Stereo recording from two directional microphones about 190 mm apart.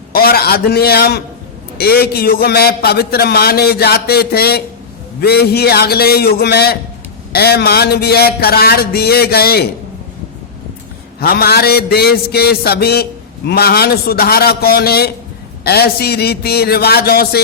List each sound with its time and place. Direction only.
0.1 s a man's voice: 50° left (ahead or behind)
11.2 s a man's voice: 55° left (ahead or behind)